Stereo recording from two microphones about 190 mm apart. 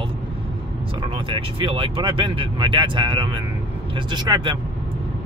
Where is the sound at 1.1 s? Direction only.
25° right (ahead or behind).